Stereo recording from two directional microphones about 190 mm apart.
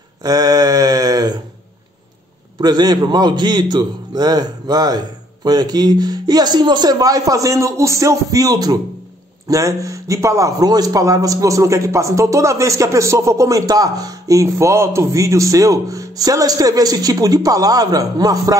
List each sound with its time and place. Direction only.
0.2 s mantra: 20° right (ahead or behind)
2.6 s a man's voice: 20° right (ahead or behind)